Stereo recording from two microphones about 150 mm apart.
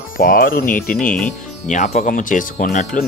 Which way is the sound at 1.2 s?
55° left (ahead or behind).